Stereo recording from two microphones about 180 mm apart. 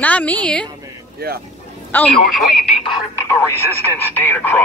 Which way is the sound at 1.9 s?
10° left (ahead or behind).